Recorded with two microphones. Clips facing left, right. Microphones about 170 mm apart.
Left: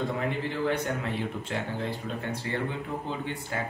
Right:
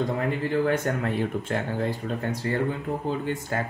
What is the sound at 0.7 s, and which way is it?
Speech, 50° right (ahead or behind).